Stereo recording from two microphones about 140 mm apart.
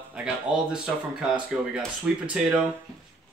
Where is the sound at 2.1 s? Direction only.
5° right (ahead or behind).